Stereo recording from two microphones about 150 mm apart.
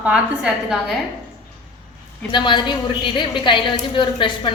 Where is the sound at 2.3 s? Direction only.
30° left (ahead or behind).